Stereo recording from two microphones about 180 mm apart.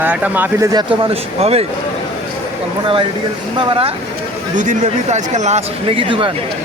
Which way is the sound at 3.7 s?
30° right (ahead or behind).